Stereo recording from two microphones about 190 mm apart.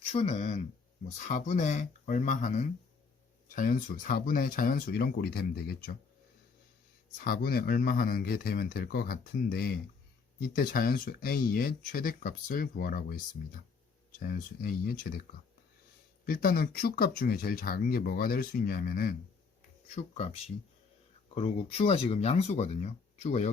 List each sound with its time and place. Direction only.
0.1 s speech: 35° left (ahead or behind)
3.5 s speech: 45° left (ahead or behind)
7.2 s speech: 50° left (ahead or behind)
14.2 s speech: 50° left (ahead or behind)
16.2 s speech: 50° left (ahead or behind)
21.3 s speech: 30° left (ahead or behind)